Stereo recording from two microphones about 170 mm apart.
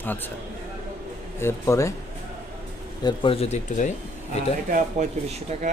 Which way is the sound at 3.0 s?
30° left (ahead or behind).